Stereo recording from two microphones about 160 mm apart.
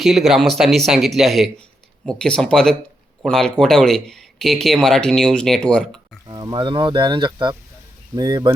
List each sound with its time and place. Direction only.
0.0 s speech: centre (ahead or behind)
6.2 s speech: 25° right (ahead or behind)